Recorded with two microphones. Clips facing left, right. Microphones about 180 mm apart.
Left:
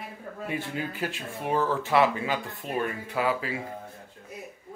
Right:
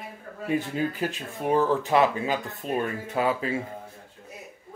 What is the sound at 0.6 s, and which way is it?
Speech, 20° right (ahead or behind).